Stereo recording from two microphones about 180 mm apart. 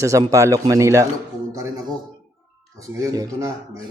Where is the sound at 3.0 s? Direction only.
20° right (ahead or behind).